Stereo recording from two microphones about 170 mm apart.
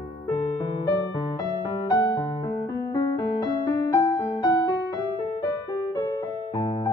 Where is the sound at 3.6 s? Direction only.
15° left (ahead or behind).